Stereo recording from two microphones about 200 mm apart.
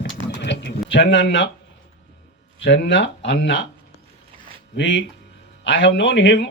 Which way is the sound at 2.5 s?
65° left (ahead or behind).